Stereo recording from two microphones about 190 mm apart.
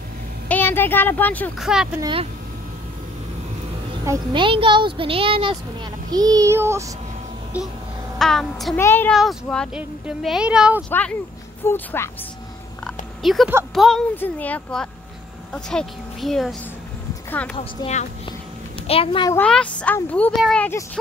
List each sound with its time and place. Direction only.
0.5 s speech: 10° left (ahead or behind)
1.6 s speech: 5° right (ahead or behind)
2.0 s speech: 25° right (ahead or behind)
4.0 s speech: 20° right (ahead or behind); by 8.7 s centre (ahead or behind)
8.7 s speech: 10° left (ahead or behind)
9.2 s speech: centre (ahead or behind)
10.9 s speech: 10° left (ahead or behind)
13.2 s a woman's voice: centre (ahead or behind)
17.6 s a woman's voice: 35° left (ahead or behind)
19.3 s speech: 5° left (ahead or behind)